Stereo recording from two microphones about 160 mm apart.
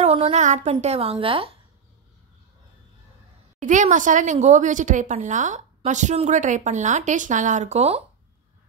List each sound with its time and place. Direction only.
0.0 s a woman's voice: 40° right (ahead or behind)
3.6 s speech: 50° right (ahead or behind)